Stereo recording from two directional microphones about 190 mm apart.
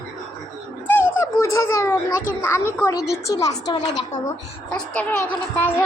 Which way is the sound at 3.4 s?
25° left (ahead or behind).